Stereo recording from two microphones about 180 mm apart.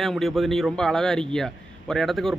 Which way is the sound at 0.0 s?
Centre (ahead or behind).